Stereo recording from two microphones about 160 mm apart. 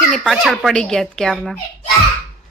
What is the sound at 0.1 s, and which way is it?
Speech, centre (ahead or behind).